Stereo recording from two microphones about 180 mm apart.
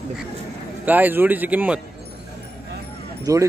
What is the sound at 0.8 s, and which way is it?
Speech, 10° right (ahead or behind).